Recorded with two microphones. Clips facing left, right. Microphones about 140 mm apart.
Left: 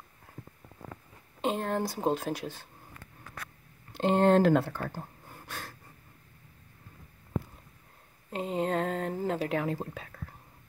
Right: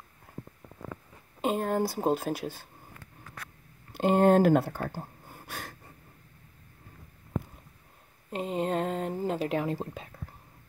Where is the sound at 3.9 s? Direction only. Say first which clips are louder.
Right 1 dB; 10° right (ahead or behind).